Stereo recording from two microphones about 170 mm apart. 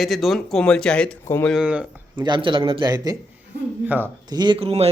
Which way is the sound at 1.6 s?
5° right (ahead or behind).